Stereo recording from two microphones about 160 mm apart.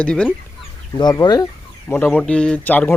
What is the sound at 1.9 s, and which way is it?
Speech, 10° left (ahead or behind).